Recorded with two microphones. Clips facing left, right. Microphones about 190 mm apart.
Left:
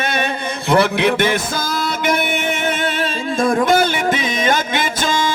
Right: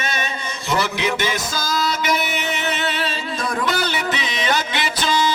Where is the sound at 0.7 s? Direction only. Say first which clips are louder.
Left 7 dB; 60° left (ahead or behind).